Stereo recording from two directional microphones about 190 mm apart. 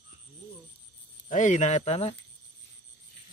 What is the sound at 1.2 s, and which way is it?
Speech, 40° left (ahead or behind).